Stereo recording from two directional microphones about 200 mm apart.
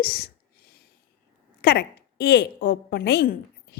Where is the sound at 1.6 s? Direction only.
55° left (ahead or behind).